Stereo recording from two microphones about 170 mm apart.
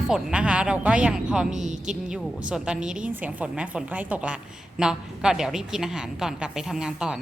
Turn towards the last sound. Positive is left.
turn(degrees=-5)  # may be behind; listen again after turning